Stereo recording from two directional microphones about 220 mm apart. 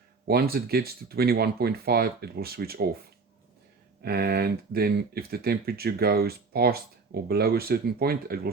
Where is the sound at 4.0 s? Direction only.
45° right (ahead or behind).